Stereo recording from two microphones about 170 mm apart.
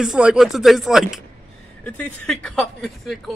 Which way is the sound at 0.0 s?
5° right (ahead or behind).